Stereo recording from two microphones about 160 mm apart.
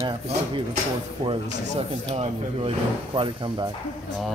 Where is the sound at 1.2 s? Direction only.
35° right (ahead or behind).